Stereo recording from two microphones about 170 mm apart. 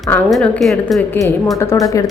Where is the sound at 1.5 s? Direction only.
20° left (ahead or behind).